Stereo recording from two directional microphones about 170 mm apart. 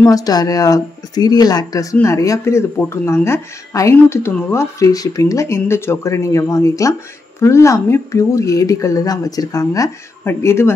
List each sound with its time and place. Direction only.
0.0 s speech: 20° left (ahead or behind)